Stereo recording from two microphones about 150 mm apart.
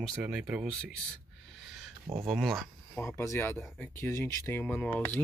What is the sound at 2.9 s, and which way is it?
Speech, 15° left (ahead or behind).